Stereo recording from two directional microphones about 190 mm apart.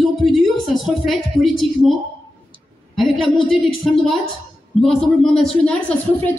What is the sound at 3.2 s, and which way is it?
Speech, 25° left (ahead or behind).